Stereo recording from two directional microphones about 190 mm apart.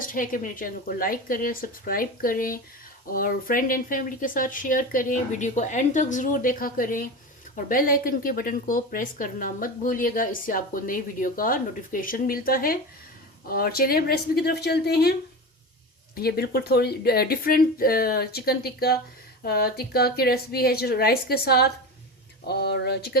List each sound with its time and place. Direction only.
0.0 s speech: 45° left (ahead or behind)
16.1 s speech: 55° left (ahead or behind)